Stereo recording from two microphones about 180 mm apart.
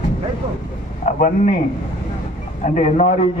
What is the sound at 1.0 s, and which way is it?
Speech, 45° left (ahead or behind).